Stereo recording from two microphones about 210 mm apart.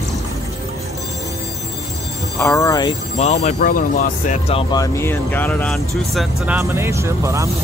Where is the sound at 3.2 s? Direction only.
30° left (ahead or behind).